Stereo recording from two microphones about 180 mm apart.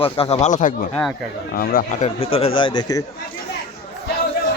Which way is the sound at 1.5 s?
55° left (ahead or behind).